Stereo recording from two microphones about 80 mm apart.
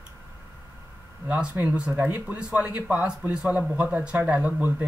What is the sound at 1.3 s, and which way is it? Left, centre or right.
Speech, centre.